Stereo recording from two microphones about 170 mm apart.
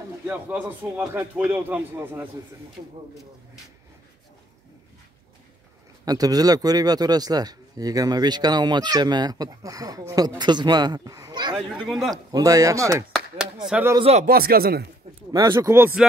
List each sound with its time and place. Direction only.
0.3 s speech: 10° right (ahead or behind)
6.0 s a man's voice: 20° right (ahead or behind)
11.5 s speech: centre (ahead or behind)
12.3 s a man's voice: 20° right (ahead or behind)
14.2 s speech: 65° right (ahead or behind)
15.3 s speech: 20° right (ahead or behind)